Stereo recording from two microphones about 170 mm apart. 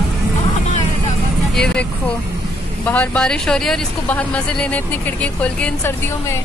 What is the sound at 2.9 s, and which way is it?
Speech, 5° left (ahead or behind).